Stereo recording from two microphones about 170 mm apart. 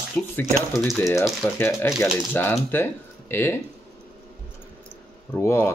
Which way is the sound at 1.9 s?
Centre (ahead or behind).